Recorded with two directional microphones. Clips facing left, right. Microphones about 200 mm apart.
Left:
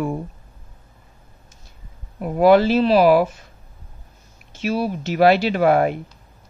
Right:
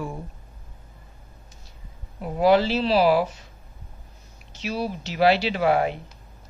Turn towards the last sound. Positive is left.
turn(degrees=50)  # may be behind; listen again after turning